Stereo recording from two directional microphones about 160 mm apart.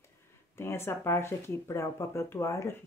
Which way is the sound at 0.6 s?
15° left (ahead or behind).